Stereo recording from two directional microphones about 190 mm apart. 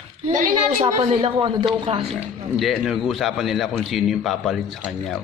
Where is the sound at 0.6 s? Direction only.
35° right (ahead or behind).